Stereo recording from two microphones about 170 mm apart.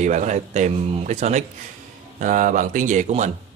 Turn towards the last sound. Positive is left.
turn(degrees=-45)  # may be behind; listen again after turning